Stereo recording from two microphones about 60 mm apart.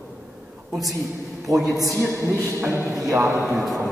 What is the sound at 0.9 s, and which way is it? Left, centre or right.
Speech, centre.